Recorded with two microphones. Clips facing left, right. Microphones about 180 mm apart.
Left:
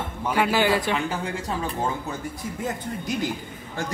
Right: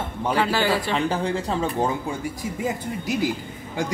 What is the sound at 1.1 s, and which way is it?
Speech, 30° right (ahead or behind).